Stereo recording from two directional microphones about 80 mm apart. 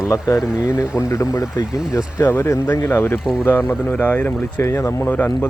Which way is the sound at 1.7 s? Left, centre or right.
Centre.